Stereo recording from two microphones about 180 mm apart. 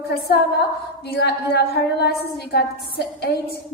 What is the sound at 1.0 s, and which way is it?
A woman's voice, 65° left (ahead or behind).